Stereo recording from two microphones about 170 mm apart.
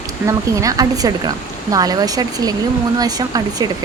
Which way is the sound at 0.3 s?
20° right (ahead or behind).